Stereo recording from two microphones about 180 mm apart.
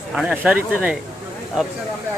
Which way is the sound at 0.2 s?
5° right (ahead or behind).